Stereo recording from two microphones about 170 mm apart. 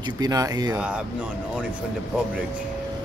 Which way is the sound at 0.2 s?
20° right (ahead or behind).